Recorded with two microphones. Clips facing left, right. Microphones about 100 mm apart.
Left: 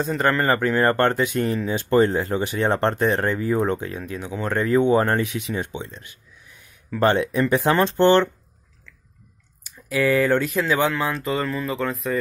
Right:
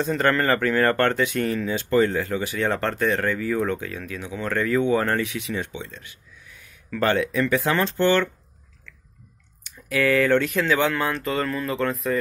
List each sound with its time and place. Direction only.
0.0 s speech: 5° left (ahead or behind)
0.4 s speech: 20° left (ahead or behind)
9.9 s speech: 10° left (ahead or behind)